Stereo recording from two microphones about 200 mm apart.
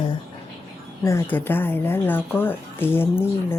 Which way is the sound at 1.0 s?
15° left (ahead or behind).